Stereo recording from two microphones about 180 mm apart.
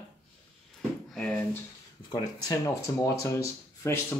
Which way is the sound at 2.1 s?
20° left (ahead or behind).